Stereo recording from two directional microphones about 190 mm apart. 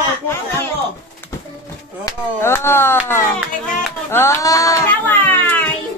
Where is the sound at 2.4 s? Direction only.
10° left (ahead or behind).